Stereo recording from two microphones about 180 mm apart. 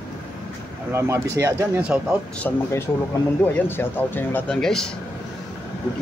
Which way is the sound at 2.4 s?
10° left (ahead or behind).